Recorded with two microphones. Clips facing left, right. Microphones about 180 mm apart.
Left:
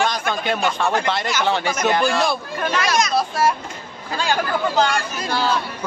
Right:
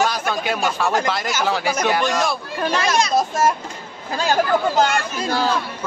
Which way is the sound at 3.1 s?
45° right (ahead or behind).